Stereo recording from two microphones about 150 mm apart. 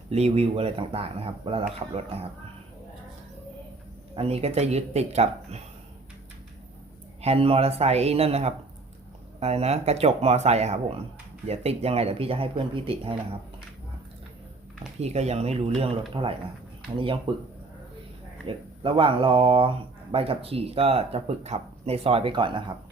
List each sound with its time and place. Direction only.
0.1 s speech: 45° right (ahead or behind)
4.1 s speech: 40° right (ahead or behind)
7.2 s speech: 40° right (ahead or behind)
15.0 s speech: 45° right (ahead or behind)
18.4 s speech: 35° right (ahead or behind)